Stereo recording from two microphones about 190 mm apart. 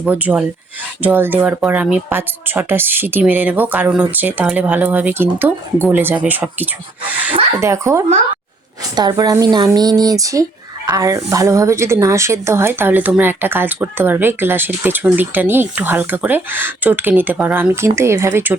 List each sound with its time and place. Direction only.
0.0 s a woman's voice: 5° right (ahead or behind)